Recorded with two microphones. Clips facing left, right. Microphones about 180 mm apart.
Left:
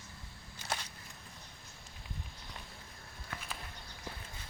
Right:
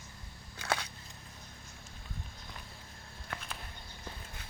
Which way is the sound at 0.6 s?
65° right (ahead or behind).